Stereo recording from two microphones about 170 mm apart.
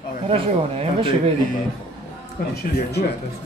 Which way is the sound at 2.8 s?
70° left (ahead or behind).